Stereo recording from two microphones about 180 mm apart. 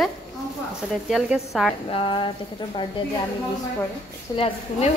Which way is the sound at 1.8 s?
30° left (ahead or behind).